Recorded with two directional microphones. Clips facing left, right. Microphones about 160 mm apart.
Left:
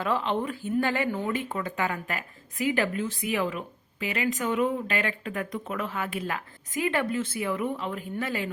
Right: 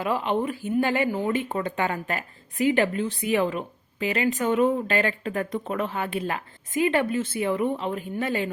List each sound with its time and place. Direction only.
0.0 s speech: 15° right (ahead or behind)
1.5 s a woman's voice: 30° right (ahead or behind)